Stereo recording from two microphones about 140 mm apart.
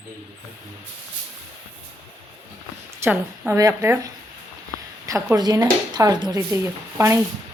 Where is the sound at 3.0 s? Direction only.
15° right (ahead or behind).